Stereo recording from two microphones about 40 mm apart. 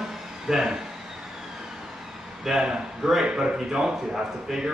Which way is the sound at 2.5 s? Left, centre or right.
Centre.